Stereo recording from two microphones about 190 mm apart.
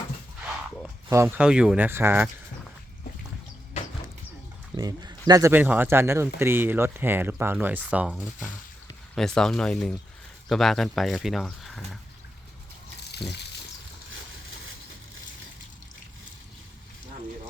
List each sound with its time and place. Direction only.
1.1 s speech: 10° right (ahead or behind)
4.7 s speech: 20° right (ahead or behind); by 11.9 s centre (ahead or behind)
13.1 s a sound: 60° left (ahead or behind)